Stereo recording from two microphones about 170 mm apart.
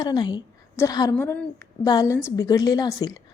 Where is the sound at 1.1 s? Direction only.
10° left (ahead or behind).